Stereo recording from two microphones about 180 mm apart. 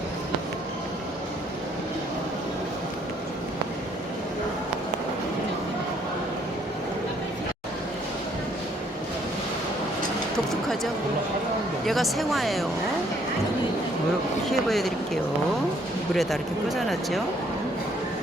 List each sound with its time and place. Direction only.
11.9 s speech: centre (ahead or behind)
14.5 s speech: centre (ahead or behind)